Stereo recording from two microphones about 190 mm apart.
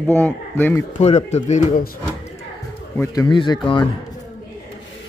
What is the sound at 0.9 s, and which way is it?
Speech, 35° left (ahead or behind).